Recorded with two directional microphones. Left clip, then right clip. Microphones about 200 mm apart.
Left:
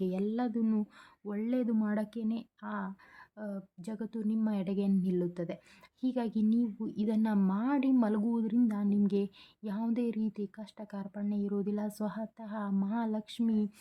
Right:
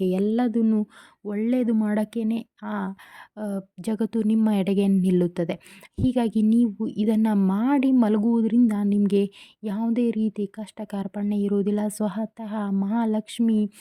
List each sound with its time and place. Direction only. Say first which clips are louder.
0.0 s a woman's voice: right 10 dB; 35° right (ahead or behind)